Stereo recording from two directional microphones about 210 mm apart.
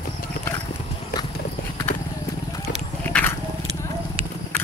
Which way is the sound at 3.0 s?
10° left (ahead or behind).